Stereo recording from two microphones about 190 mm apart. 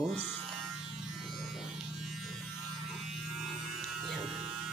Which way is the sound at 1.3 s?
Centre (ahead or behind).